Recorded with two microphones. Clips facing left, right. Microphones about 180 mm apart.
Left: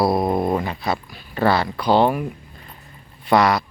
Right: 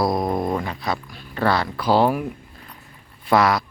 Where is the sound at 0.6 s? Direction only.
5° left (ahead or behind).